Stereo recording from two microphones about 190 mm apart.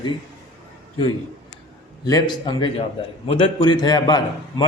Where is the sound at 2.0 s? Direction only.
20° left (ahead or behind).